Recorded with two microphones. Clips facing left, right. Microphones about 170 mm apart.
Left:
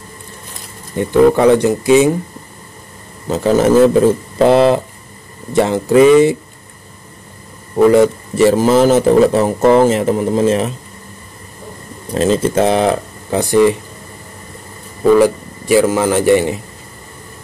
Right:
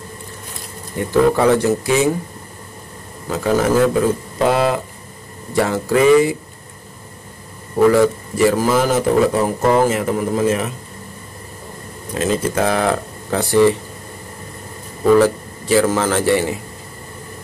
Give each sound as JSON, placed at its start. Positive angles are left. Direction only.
{"t": 0.9, "sound": "a man's voice", "side_deg": 20}
{"t": 3.3, "sound": "a man's voice", "side_deg": 25}
{"t": 7.8, "sound": "a man's voice", "side_deg": 20}
{"t": 12.1, "sound": "a man's voice", "side_deg": 30}
{"t": 15.1, "sound": "a man's voice", "side_deg": 15}